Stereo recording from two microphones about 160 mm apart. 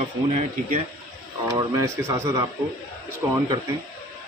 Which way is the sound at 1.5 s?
20° right (ahead or behind).